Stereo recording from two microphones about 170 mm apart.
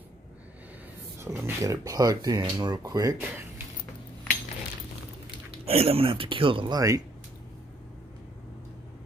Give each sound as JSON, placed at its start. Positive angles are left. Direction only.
{"t": 1.2, "sound": "speech", "side_deg": -15}
{"t": 5.7, "sound": "speech", "side_deg": -35}